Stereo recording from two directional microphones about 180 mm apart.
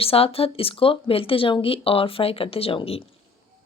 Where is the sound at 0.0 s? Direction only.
30° left (ahead or behind).